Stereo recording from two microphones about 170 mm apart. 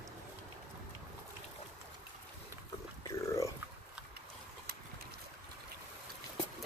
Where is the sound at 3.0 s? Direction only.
20° left (ahead or behind).